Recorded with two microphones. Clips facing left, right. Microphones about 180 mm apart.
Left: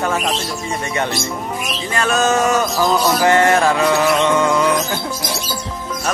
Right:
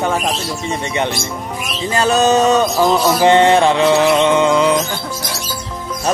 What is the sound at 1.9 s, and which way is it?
Music, 30° right (ahead or behind).